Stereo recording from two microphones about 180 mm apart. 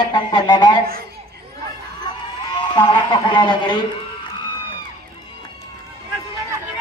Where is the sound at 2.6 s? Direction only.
25° left (ahead or behind).